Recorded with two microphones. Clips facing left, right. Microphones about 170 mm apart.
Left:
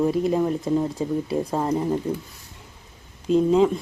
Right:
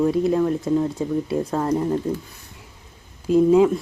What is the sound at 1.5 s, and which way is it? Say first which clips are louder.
Speech: right 1 dB; 10° left (ahead or behind).